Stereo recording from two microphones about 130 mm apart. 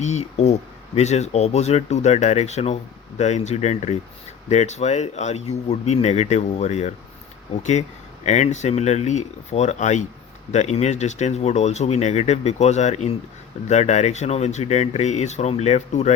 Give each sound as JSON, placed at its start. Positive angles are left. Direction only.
{"t": 0.0, "sound": "speech", "side_deg": 60}